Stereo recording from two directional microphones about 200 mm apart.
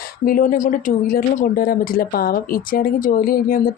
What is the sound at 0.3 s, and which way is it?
Speech, 45° left (ahead or behind).